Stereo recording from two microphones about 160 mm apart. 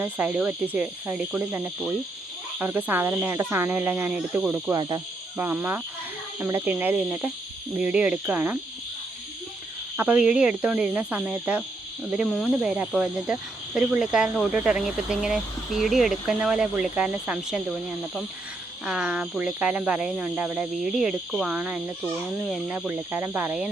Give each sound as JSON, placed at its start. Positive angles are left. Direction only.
{"t": 0.0, "sound": "speech", "side_deg": -10}
{"t": 4.7, "sound": "cricket", "side_deg": -25}
{"t": 5.4, "sound": "speech", "side_deg": -15}
{"t": 10.0, "sound": "speech", "side_deg": -10}
{"t": 18.9, "sound": "speech", "side_deg": -5}